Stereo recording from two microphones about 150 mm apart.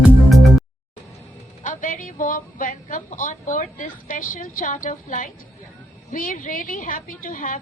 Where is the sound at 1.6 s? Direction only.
60° left (ahead or behind).